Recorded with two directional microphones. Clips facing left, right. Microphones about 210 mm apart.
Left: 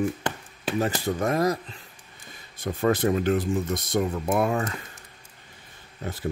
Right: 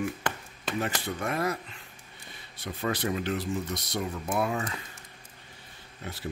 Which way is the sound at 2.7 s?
45° left (ahead or behind).